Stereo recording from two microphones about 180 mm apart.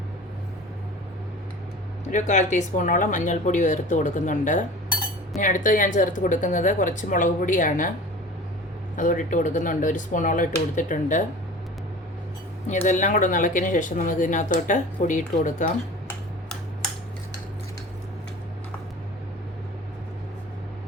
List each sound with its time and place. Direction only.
2.1 s speech: 40° left (ahead or behind)
9.0 s speech: 45° left (ahead or behind)
12.6 s speech: 40° left (ahead or behind)